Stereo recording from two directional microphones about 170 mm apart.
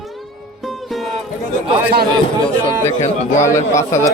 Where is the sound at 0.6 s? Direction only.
Centre (ahead or behind).